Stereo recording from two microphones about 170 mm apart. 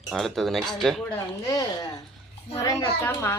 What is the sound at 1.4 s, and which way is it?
A child's voice, 20° left (ahead or behind).